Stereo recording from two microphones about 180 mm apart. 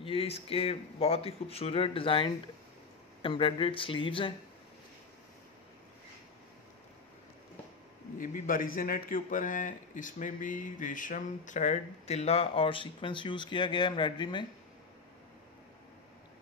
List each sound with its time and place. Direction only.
0.0 s speech: 30° left (ahead or behind)
8.2 s a man's voice: 50° left (ahead or behind); by 14.4 s 25° left (ahead or behind)